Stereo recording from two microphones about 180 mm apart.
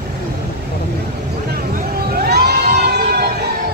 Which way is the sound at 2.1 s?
65° right (ahead or behind).